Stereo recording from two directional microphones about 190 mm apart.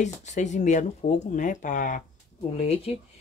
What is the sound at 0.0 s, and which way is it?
Speech, 40° left (ahead or behind).